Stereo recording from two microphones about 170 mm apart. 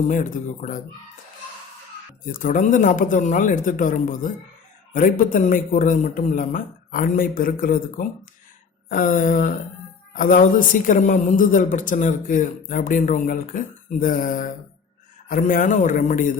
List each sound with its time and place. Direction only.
0.1 s a man's voice: 50° left (ahead or behind)
2.2 s a man's voice: 50° left (ahead or behind)